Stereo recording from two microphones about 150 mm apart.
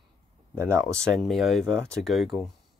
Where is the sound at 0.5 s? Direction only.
20° right (ahead or behind).